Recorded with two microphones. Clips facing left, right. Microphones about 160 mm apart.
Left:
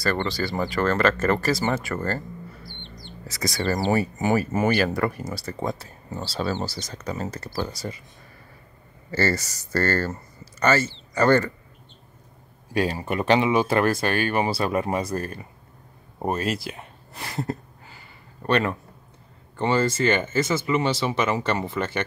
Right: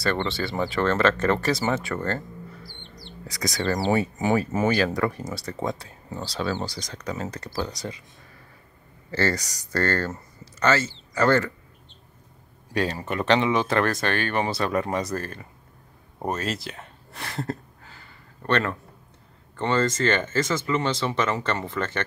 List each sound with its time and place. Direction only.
0.0 s speech: centre (ahead or behind)
2.6 s bird: 10° right (ahead or behind)
3.9 s speech: centre (ahead or behind)
9.1 s speech: 5° left (ahead or behind)
12.7 s speech: 10° left (ahead or behind)
16.2 s a sound: 10° left (ahead or behind)
19.5 s speech: 10° left (ahead or behind)